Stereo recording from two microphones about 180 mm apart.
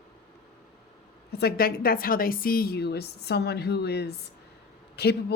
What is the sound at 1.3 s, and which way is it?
A woman's voice, 60° left (ahead or behind).